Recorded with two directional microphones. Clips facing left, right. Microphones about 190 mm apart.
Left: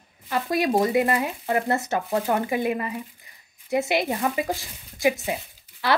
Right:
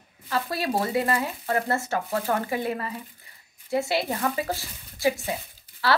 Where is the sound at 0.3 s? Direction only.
15° left (ahead or behind).